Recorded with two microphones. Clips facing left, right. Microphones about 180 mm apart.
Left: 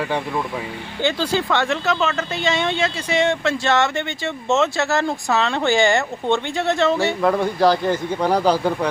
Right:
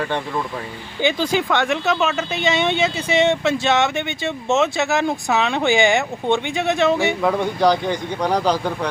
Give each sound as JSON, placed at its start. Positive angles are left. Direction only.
{"t": 0.0, "sound": "speech", "side_deg": 5}
{"t": 1.0, "sound": "speech", "side_deg": -15}
{"t": 7.2, "sound": "speech", "side_deg": 0}